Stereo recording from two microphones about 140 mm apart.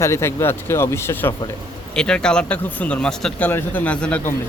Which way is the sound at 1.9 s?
5° left (ahead or behind).